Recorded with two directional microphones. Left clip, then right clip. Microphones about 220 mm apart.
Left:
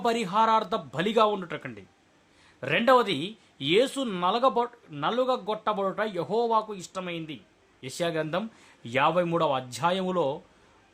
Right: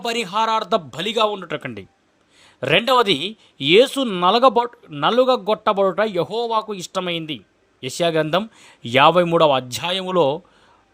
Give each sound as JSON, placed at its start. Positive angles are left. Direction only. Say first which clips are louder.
{"t": 0.0, "sound": "speech", "louder": "right 3 dB", "side_deg": -30}